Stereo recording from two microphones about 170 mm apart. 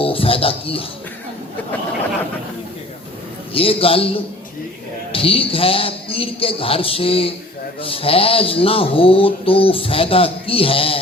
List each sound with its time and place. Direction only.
0.0 s speech: 35° left (ahead or behind)
3.5 s speech: 35° left (ahead or behind)